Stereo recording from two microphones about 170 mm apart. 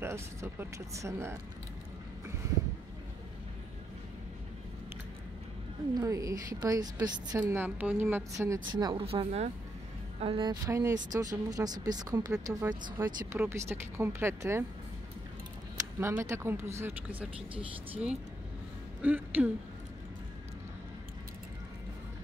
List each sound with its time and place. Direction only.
0.0 s speech: 15° right (ahead or behind)
5.9 s a woman's voice: 20° right (ahead or behind)
8.7 s a woman's voice: 25° right (ahead or behind)
16.0 s speech: 15° right (ahead or behind)
19.0 s speech: 10° right (ahead or behind)